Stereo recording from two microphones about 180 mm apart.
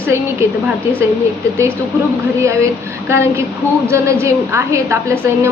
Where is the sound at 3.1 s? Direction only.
15° right (ahead or behind).